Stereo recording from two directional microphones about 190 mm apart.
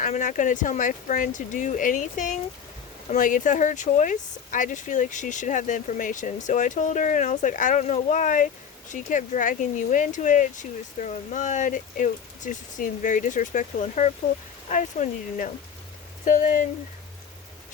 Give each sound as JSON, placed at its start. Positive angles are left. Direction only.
{"t": 0.0, "sound": "speech", "side_deg": 40}